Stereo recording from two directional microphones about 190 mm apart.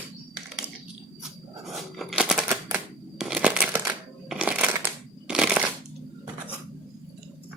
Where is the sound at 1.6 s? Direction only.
Centre (ahead or behind).